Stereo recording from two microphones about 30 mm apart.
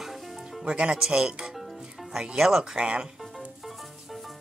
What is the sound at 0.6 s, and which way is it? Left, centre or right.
Speech, right.